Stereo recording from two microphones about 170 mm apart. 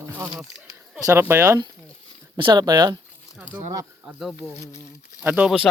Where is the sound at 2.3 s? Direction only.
25° right (ahead or behind).